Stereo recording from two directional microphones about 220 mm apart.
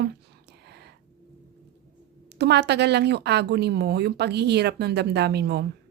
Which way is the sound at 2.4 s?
50° right (ahead or behind).